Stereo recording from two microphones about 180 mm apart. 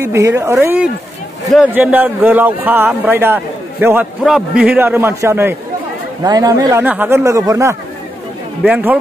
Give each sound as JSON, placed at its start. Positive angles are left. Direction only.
{"t": 0.0, "sound": "a man's voice", "side_deg": -15}